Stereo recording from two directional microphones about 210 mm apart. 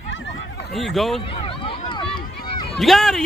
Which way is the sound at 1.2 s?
25° left (ahead or behind).